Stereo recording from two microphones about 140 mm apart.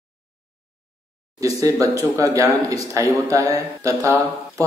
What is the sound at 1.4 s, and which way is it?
A man's voice, 25° right (ahead or behind).